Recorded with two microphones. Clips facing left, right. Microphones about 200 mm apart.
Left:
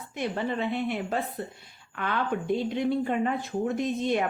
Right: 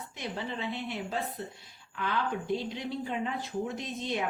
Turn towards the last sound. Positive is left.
turn(degrees=55)  # may be behind; listen again after turning